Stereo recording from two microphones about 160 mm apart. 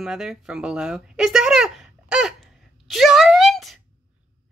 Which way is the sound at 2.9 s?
Centre (ahead or behind).